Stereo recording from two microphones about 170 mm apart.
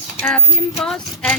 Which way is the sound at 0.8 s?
5° left (ahead or behind).